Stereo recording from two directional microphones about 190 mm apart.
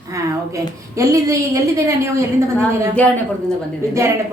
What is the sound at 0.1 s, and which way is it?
A woman's voice, 15° right (ahead or behind).